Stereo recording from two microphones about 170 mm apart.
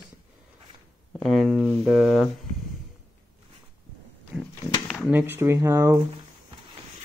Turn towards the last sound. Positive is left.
turn(degrees=-15)  # may be behind; listen again after turning